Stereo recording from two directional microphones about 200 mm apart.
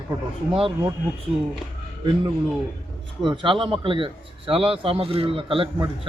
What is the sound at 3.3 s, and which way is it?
A man's voice, 25° right (ahead or behind).